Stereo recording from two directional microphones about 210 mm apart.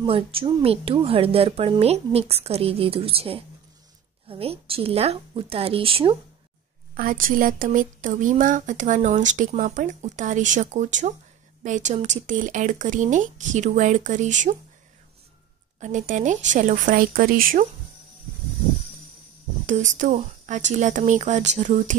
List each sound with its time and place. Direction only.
0.0 s a woman's voice: 25° right (ahead or behind)
7.0 s speech: 40° right (ahead or behind)
15.8 s speech: 35° right (ahead or behind)
19.9 s speech: 35° right (ahead or behind)